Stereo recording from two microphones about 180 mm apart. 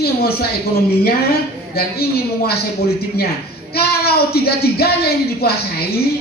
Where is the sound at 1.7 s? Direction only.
60° left (ahead or behind).